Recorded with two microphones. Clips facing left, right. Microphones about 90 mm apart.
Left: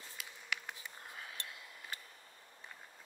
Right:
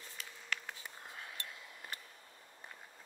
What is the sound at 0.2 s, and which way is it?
Writing, 10° left (ahead or behind).